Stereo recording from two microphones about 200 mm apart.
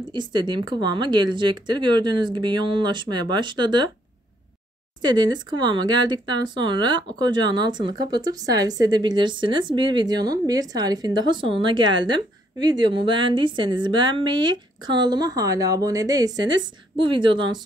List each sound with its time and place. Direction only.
0.0 s speech: 20° right (ahead or behind)
5.0 s speech: 20° right (ahead or behind)